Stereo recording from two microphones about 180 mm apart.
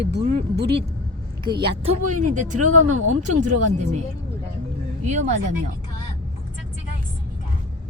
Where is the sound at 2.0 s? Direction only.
45° right (ahead or behind).